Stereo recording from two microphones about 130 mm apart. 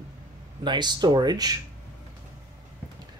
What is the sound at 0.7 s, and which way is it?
Speech, 35° right (ahead or behind).